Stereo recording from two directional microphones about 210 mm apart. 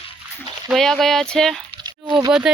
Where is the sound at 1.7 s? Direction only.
20° right (ahead or behind).